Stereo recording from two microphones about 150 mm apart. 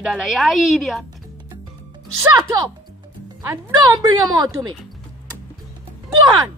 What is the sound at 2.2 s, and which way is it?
Speech, 25° right (ahead or behind).